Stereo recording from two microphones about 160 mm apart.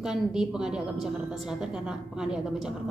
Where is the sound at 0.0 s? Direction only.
5° right (ahead or behind).